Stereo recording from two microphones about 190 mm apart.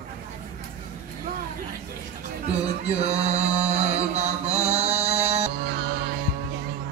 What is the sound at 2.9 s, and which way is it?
Mantra, 35° right (ahead or behind).